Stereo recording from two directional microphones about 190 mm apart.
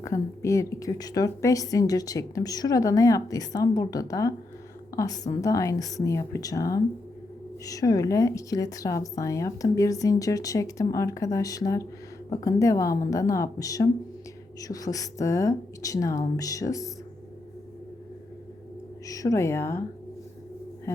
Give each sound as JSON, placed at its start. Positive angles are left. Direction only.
{"t": 0.0, "sound": "a woman's voice", "side_deg": 15}
{"t": 19.0, "sound": "speech", "side_deg": 15}
{"t": 20.9, "sound": "a sound", "side_deg": 15}